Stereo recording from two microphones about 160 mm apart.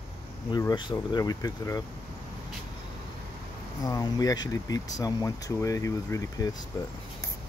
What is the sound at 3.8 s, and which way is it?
Speech, 20° left (ahead or behind).